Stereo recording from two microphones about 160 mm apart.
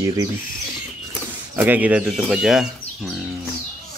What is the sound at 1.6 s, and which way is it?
Speech, 10° right (ahead or behind).